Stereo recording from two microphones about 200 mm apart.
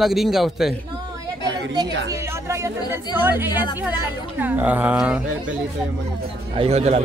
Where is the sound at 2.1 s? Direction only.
15° right (ahead or behind).